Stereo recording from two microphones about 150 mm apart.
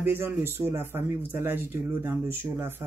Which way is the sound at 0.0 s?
15° right (ahead or behind).